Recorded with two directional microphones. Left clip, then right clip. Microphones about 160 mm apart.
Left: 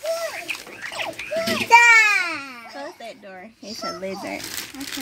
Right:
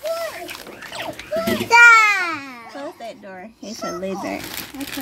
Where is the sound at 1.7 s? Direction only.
50° left (ahead or behind).